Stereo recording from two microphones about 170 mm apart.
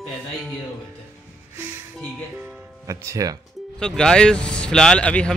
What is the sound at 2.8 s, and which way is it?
Speech, 20° right (ahead or behind).